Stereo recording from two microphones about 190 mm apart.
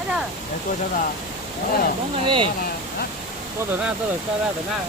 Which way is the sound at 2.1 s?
25° right (ahead or behind).